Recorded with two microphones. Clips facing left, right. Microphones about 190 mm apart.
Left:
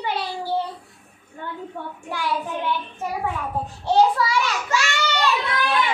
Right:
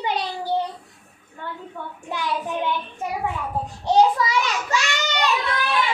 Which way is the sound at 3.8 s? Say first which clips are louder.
Right 1 dB; 15° right (ahead or behind).